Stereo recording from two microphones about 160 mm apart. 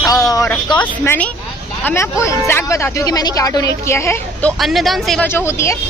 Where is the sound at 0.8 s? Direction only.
10° left (ahead or behind).